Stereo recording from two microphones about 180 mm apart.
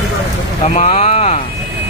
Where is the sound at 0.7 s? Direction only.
40° left (ahead or behind).